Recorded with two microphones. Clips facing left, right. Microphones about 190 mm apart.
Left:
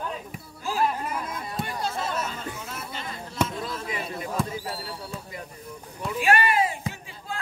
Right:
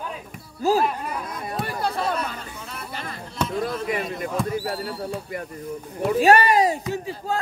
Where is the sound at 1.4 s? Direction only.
55° right (ahead or behind).